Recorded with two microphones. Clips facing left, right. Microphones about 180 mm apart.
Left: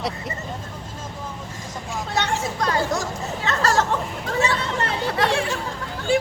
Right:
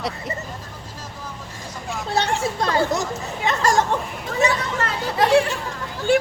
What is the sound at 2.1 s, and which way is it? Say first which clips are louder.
Chatter: right 2 dB; 30° right (ahead or behind).